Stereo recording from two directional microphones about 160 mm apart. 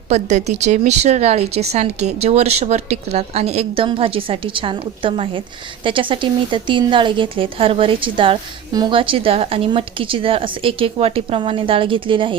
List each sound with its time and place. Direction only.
0.1 s a woman's voice: 45° right (ahead or behind)